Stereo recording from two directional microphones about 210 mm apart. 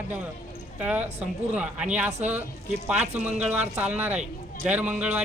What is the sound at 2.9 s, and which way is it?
Speech, 30° right (ahead or behind).